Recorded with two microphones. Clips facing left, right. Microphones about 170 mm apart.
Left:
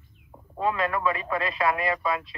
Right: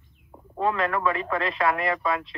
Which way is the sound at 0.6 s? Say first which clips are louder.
Right 1 dB; 10° left (ahead or behind).